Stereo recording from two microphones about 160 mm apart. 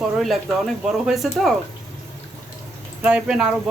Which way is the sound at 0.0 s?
Centre (ahead or behind).